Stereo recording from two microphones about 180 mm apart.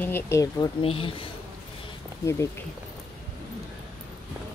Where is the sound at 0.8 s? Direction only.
30° left (ahead or behind).